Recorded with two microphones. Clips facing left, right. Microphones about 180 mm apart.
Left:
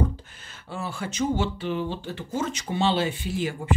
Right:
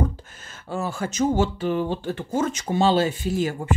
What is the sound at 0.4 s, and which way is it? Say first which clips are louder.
Speech: right 7 dB; 45° right (ahead or behind).